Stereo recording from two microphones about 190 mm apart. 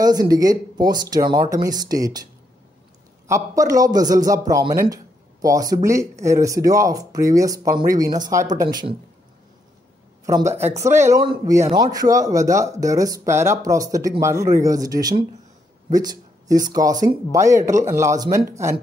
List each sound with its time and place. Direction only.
0.0 s speech: 20° right (ahead or behind)
3.3 s speech: 15° right (ahead or behind)
10.2 s speech: 15° right (ahead or behind)